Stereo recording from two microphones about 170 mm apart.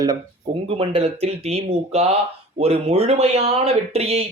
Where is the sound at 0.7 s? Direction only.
35° right (ahead or behind).